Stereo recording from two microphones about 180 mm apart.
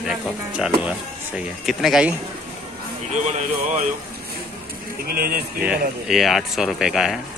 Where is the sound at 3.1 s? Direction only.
40° right (ahead or behind).